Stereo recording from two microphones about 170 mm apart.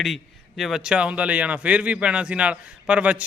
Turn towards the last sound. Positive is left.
turn(degrees=-10)  # may be behind; listen again after turning